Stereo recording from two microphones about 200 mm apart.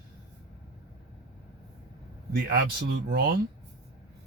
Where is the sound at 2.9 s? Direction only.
50° right (ahead or behind).